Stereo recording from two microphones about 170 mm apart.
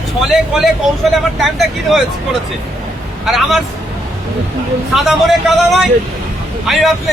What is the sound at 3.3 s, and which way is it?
Speech, centre (ahead or behind).